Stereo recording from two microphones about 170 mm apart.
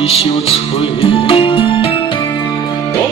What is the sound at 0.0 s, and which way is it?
Music, 35° left (ahead or behind).